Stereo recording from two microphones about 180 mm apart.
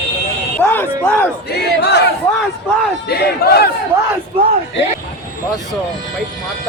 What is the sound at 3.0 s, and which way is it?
Speech, 60° left (ahead or behind).